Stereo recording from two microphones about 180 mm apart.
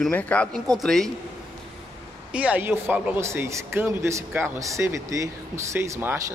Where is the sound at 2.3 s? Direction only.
10° right (ahead or behind).